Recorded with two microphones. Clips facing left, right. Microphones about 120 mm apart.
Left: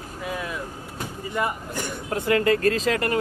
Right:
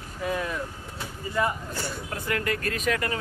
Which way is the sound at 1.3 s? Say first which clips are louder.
Even; 20° left (ahead or behind).